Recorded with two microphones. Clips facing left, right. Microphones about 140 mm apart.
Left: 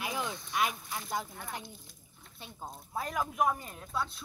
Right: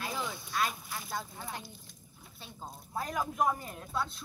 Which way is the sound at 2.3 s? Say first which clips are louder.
Left 2 dB; 20° left (ahead or behind).